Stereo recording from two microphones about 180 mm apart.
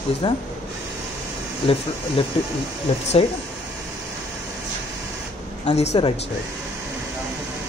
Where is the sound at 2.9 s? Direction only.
35° left (ahead or behind).